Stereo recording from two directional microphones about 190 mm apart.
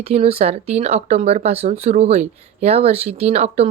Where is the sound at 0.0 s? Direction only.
30° right (ahead or behind).